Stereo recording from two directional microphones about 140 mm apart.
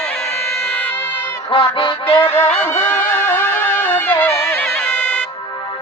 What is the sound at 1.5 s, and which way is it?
Music, 40° left (ahead or behind).